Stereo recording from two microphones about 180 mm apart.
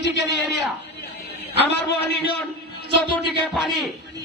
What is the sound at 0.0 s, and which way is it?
Speech, 75° left (ahead or behind).